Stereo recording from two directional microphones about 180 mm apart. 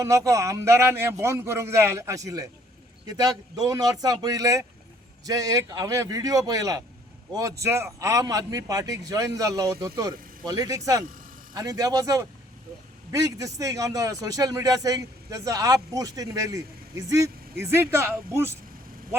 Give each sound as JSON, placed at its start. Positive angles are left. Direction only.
{"t": 0.0, "sound": "a man's voice", "side_deg": -15}